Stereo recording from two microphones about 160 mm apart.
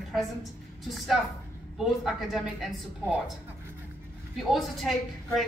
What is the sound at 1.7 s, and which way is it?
Speech, centre (ahead or behind).